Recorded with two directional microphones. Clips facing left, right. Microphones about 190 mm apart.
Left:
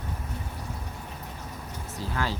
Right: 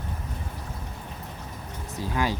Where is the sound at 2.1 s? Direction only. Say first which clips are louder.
Right 4 dB; 15° right (ahead or behind).